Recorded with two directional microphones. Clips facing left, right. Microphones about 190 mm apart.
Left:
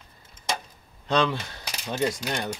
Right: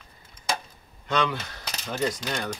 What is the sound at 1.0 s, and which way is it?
Speech, 30° left (ahead or behind).